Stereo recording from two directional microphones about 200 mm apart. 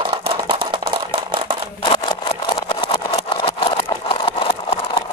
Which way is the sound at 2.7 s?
25° left (ahead or behind).